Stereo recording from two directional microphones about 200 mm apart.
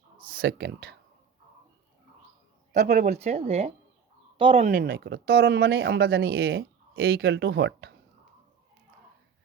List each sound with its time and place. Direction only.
0.2 s speech: 45° right (ahead or behind)
2.7 s speech: 45° right (ahead or behind); by 4.7 s 25° right (ahead or behind)
4.7 s speech: 50° right (ahead or behind)